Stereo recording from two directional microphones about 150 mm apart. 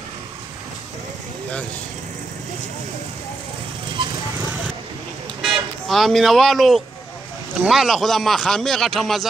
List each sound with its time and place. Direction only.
5.4 s speech: centre (ahead or behind)